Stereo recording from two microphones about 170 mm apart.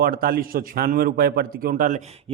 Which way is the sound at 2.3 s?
35° right (ahead or behind).